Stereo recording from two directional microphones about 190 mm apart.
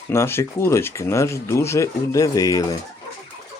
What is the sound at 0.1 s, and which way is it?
Speech, 15° left (ahead or behind).